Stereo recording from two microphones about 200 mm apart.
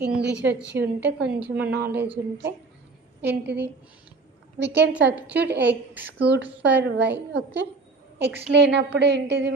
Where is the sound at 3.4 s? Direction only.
55° right (ahead or behind).